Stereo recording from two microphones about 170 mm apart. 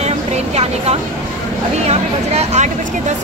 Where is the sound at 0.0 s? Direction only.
40° right (ahead or behind).